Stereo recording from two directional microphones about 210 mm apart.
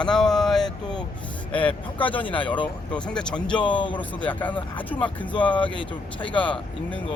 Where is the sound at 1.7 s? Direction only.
25° left (ahead or behind).